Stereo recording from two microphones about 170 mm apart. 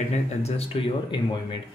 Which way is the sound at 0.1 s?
35° left (ahead or behind).